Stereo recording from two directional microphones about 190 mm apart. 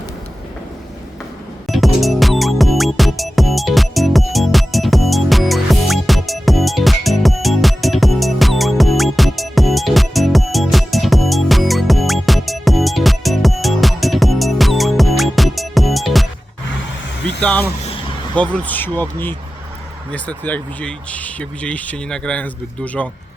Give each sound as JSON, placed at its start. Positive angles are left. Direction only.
{"t": 1.6, "sound": "music", "side_deg": 0}
{"t": 17.4, "sound": "a sound", "side_deg": 10}
{"t": 18.3, "sound": "speech", "side_deg": 5}